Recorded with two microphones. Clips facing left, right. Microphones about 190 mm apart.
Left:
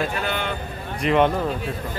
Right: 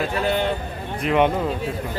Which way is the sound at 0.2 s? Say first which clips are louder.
Right 5 dB; 35° right (ahead or behind).